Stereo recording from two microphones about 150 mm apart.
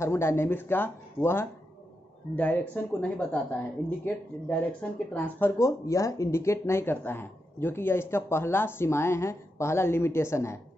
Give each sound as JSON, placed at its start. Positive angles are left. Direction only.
{"t": 0.0, "sound": "speech", "side_deg": 20}